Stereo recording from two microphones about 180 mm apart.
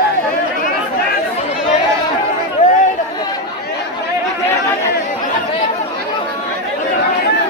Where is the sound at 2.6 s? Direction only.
45° left (ahead or behind).